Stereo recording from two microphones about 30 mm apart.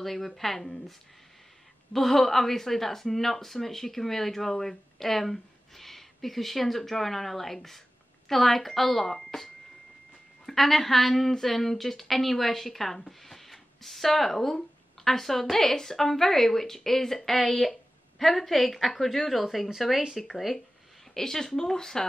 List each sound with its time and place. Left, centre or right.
0.0 s speech: centre
2.0 s speech: centre
13.2 s a sound: centre
15.0 s a woman's voice: centre
21.1 s speech: centre